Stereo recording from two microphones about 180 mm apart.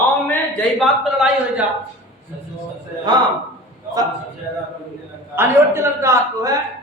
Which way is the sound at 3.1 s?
25° right (ahead or behind).